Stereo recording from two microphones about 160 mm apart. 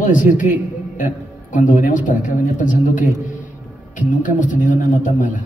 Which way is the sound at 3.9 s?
55° left (ahead or behind).